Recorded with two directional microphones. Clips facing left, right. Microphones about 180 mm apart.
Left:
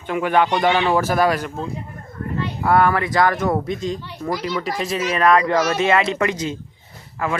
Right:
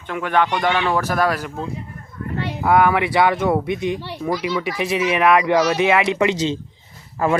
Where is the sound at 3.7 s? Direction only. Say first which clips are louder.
Right 2 dB; 65° right (ahead or behind).